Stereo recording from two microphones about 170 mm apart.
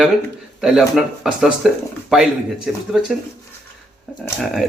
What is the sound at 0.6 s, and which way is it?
Speech, 5° right (ahead or behind).